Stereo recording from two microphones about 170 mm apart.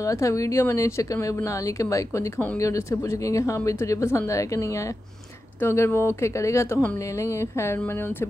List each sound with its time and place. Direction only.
0.0 s a woman's voice: 15° left (ahead or behind)